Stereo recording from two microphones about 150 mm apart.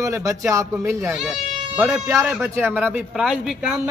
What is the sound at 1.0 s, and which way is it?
Speech, 5° right (ahead or behind).